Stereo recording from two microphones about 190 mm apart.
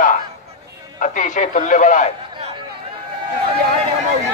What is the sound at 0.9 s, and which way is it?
Speech, 40° left (ahead or behind).